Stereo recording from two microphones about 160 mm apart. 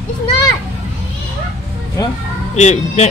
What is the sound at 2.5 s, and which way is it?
Speech, 45° left (ahead or behind).